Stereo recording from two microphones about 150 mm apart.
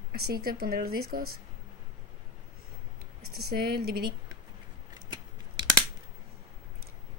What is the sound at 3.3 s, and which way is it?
Speech, 90° right.